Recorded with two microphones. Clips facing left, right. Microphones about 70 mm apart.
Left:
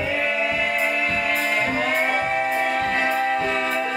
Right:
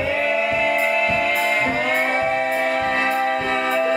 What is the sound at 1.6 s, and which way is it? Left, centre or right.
Music, centre.